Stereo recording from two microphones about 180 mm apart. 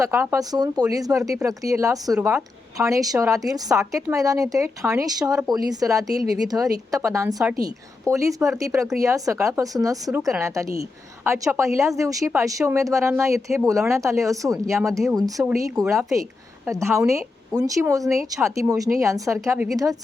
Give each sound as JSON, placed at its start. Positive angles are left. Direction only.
{"t": 0.0, "sound": "a woman's voice", "side_deg": -15}
{"t": 5.4, "sound": "speech", "side_deg": 0}
{"t": 5.8, "sound": "a woman's voice", "side_deg": -20}
{"t": 10.1, "sound": "a woman's voice", "side_deg": -5}
{"t": 15.4, "sound": "speech", "side_deg": -5}
{"t": 16.6, "sound": "a woman's voice", "side_deg": -15}